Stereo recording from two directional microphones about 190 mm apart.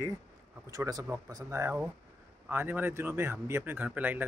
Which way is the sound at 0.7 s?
20° right (ahead or behind).